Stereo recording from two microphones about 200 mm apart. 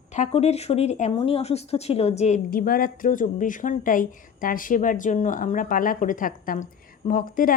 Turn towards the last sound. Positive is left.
turn(degrees=45)  # may be behind; listen again after turning